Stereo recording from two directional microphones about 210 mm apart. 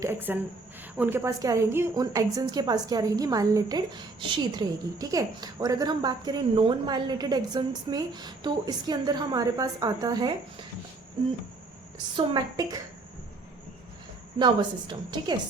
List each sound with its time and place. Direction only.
0.0 s a woman's voice: 10° right (ahead or behind)
12.1 s a woman's voice: 20° right (ahead or behind)
14.3 s a woman's voice: 20° right (ahead or behind)